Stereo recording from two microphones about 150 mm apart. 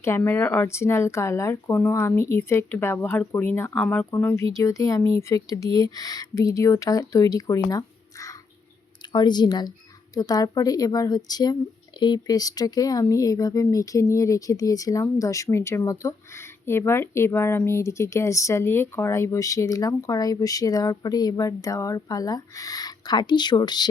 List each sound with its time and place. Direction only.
0.0 s speech: 15° left (ahead or behind)